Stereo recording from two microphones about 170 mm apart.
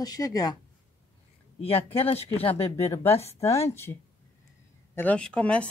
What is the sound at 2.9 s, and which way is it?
Speech, 15° left (ahead or behind).